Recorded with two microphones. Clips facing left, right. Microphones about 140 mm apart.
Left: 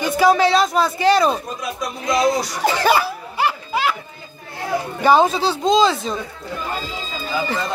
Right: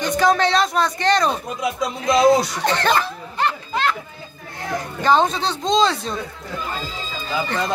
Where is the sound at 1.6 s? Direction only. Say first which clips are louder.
Right 3 dB; 20° right (ahead or behind).